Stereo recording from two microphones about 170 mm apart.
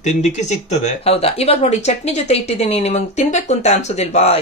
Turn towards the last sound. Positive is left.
turn(degrees=40)  # may be behind; listen again after turning